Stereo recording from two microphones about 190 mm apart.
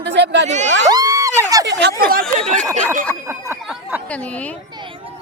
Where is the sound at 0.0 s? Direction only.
65° right (ahead or behind).